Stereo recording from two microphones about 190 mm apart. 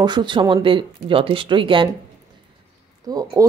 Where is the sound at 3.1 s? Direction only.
20° right (ahead or behind).